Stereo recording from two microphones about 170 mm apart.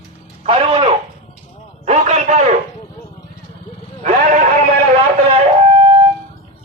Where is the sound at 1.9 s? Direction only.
40° right (ahead or behind).